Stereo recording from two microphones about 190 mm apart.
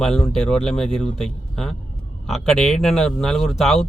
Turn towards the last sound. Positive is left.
turn(degrees=0)  # may be behind; listen again after turning